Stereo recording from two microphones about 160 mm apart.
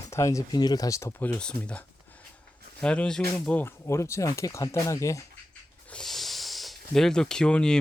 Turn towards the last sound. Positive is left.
turn(degrees=5)  # may be behind; listen again after turning